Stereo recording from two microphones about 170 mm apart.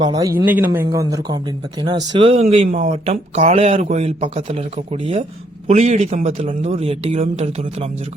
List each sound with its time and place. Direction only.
0.0 s speech: 25° right (ahead or behind)
0.3 s a man's voice: 10° right (ahead or behind)
2.1 s speech: 30° right (ahead or behind)